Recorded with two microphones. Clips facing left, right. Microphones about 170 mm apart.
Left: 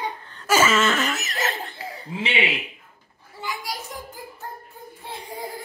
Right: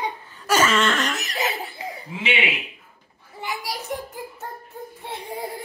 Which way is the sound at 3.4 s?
25° right (ahead or behind).